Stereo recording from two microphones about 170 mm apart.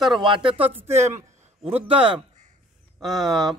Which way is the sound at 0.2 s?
30° right (ahead or behind).